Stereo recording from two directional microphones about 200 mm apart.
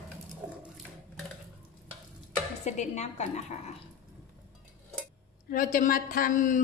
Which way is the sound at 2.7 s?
35° left (ahead or behind).